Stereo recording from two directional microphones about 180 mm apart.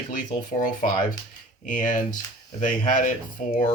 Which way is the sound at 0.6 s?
45° left (ahead or behind).